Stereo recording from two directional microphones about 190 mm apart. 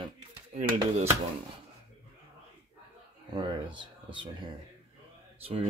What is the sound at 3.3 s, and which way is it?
Speech, 25° right (ahead or behind).